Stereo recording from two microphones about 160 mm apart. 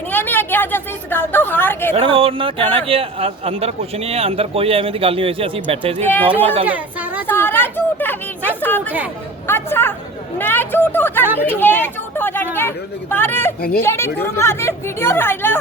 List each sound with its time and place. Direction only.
0.1 s a sound: 10° left (ahead or behind)
1.9 s speech: 35° right (ahead or behind)
6.7 s speech: 10° right (ahead or behind)
7.3 s speech: 15° left (ahead or behind)
13.6 s speech: 75° left (ahead or behind)
13.8 s speech: 15° left (ahead or behind)